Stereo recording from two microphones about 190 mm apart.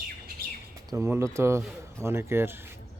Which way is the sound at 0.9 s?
15° right (ahead or behind).